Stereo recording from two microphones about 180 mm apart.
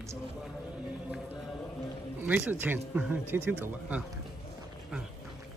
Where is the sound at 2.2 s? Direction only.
10° right (ahead or behind).